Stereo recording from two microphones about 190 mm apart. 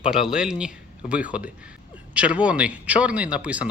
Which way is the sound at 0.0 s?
5° right (ahead or behind).